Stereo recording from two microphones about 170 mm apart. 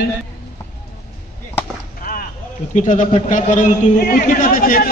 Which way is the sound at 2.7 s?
45° left (ahead or behind).